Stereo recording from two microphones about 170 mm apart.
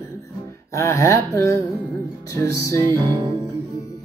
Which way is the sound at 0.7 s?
15° left (ahead or behind).